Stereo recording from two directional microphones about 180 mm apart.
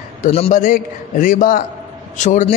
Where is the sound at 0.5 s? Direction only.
50° left (ahead or behind).